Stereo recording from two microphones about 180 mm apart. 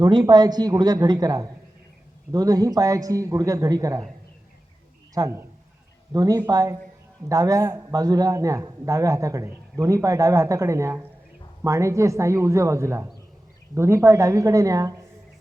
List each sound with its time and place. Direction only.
0.0 s a man's voice: 25° right (ahead or behind)
5.1 s a man's voice: 15° right (ahead or behind)